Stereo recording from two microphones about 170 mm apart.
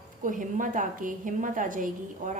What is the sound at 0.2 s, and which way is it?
A woman's voice, 50° right (ahead or behind).